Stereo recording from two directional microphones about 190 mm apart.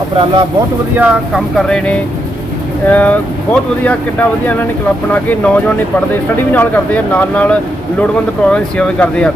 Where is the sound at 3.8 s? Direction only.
10° left (ahead or behind).